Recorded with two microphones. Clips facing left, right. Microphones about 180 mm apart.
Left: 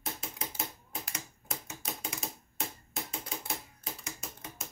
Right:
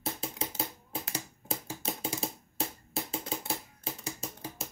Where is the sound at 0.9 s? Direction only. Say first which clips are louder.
Right 5 dB; 30° right (ahead or behind).